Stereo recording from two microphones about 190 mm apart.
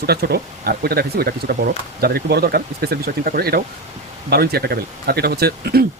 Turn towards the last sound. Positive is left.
turn(degrees=-55)  # may be behind; listen again after turning